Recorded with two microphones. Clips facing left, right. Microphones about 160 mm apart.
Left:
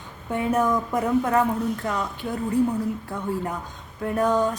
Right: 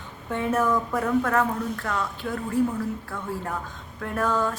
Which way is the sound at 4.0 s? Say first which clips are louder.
Left 4 dB; 15° left (ahead or behind).